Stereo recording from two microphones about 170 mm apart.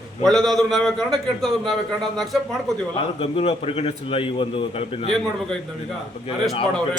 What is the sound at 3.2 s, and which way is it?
A man's voice, 35° left (ahead or behind).